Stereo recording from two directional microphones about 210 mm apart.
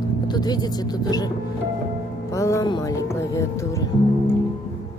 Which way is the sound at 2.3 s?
15° left (ahead or behind).